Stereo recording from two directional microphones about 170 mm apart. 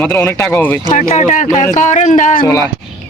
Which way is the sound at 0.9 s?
50° left (ahead or behind).